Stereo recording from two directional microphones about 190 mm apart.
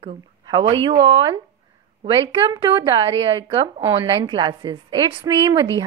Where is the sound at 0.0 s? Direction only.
25° right (ahead or behind).